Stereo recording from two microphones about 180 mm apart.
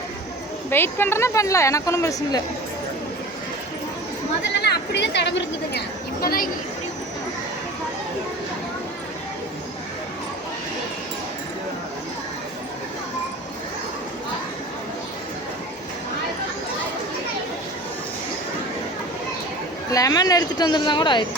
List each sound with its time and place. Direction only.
0.7 s a woman's voice: 10° left (ahead or behind)
4.6 s speech: 70° left (ahead or behind)
6.2 s speech: 55° left (ahead or behind)
19.9 s speech: 20° left (ahead or behind)